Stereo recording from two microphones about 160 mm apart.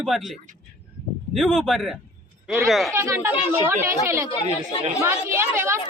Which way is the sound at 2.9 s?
15° right (ahead or behind).